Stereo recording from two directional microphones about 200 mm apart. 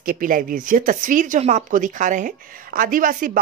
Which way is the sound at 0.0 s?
45° right (ahead or behind).